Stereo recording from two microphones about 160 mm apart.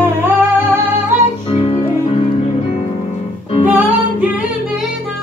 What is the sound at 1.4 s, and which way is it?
Music, 35° left (ahead or behind).